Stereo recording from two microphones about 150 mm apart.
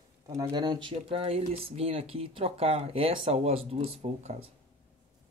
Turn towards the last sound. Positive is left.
turn(degrees=-45)  # may be behind; listen again after turning